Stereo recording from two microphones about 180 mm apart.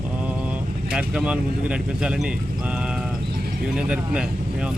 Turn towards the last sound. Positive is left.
turn(degrees=-5)  # may be behind; listen again after turning